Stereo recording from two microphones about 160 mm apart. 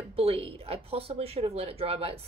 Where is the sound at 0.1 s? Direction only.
40° right (ahead or behind).